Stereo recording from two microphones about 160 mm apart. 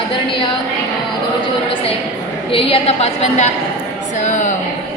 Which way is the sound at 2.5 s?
35° left (ahead or behind).